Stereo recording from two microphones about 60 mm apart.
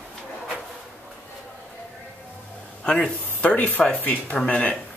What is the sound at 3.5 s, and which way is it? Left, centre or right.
Speech, left.